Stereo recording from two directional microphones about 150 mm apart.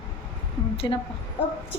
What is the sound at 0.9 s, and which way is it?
Speech, 25° left (ahead or behind).